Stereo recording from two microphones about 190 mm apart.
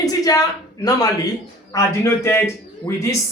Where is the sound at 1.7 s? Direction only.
15° left (ahead or behind).